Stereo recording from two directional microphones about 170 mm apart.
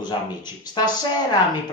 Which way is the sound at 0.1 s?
30° left (ahead or behind).